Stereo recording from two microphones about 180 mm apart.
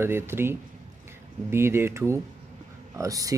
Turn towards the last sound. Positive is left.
turn(degrees=-20)  # may be behind; listen again after turning